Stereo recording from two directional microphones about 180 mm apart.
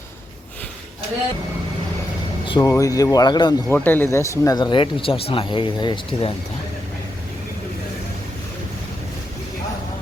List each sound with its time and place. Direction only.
2.5 s speech: 20° left (ahead or behind)
3.7 s speech: 10° left (ahead or behind); by 6.3 s 25° left (ahead or behind)